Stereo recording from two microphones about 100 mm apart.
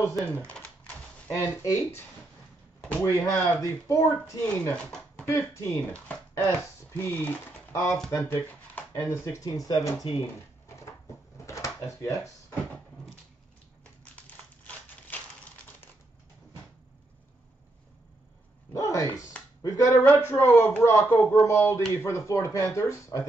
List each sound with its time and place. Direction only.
1.3 s a man's voice: 30° left (ahead or behind)
4.7 s a sound: 5° left (ahead or behind)
5.2 s a man's voice: 25° left (ahead or behind)
8.7 s a sound: 20° left (ahead or behind)
9.2 s speech: 35° left (ahead or behind)
11.4 s drawer open or close: 30° left (ahead or behind)
18.7 s a man's voice: 35° left (ahead or behind)